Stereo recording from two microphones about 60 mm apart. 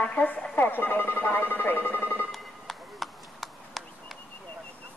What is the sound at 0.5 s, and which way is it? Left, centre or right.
Speech, left.